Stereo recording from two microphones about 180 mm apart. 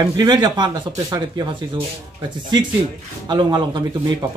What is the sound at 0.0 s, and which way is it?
Speech, 20° right (ahead or behind).